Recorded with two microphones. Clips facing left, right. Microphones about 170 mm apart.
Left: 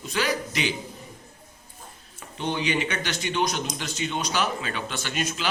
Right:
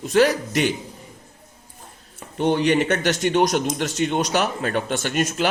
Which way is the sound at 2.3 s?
55° right (ahead or behind).